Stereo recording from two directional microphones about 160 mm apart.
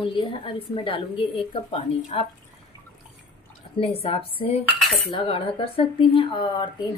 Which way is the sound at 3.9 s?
35° left (ahead or behind).